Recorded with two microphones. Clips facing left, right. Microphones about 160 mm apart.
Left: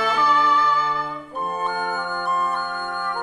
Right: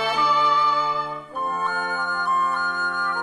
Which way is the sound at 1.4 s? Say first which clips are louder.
Left 1 dB; 15° left (ahead or behind).